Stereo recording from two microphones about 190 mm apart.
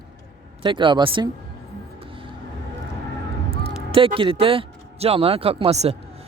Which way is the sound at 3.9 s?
30° right (ahead or behind).